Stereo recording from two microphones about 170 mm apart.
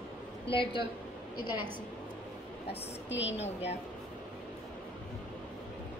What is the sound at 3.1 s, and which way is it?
Speech, 90° left.